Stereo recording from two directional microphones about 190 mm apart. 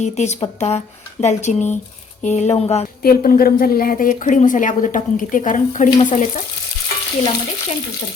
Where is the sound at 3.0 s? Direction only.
50° left (ahead or behind).